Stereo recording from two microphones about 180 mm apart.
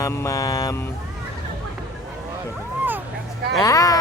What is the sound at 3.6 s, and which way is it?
Mantra, 20° left (ahead or behind).